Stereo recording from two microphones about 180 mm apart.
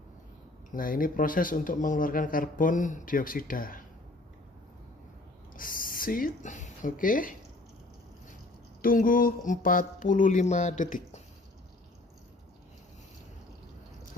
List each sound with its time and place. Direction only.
0.7 s speech: 50° left (ahead or behind)
5.5 s speech: 50° left (ahead or behind)
8.8 s speech: 50° left (ahead or behind)